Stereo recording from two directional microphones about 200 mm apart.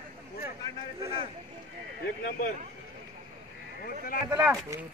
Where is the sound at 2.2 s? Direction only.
45° left (ahead or behind).